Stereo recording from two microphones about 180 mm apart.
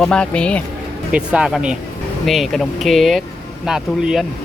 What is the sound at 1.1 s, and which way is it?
Speech, 5° right (ahead or behind).